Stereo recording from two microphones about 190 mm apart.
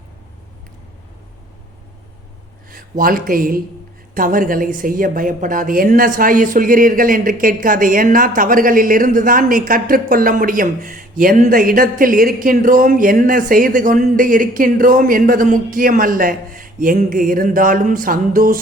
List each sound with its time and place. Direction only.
2.6 s a woman's voice: 45° right (ahead or behind)